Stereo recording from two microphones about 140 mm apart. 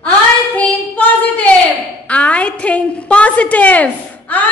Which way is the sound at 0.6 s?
10° left (ahead or behind).